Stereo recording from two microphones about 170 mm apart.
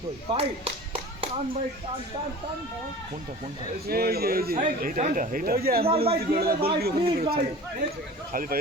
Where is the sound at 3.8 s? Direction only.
65° right (ahead or behind).